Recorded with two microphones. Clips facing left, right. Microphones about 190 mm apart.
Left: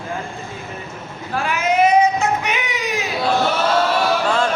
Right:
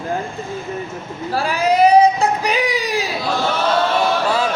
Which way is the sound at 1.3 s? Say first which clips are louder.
Right 3 dB; 35° right (ahead or behind).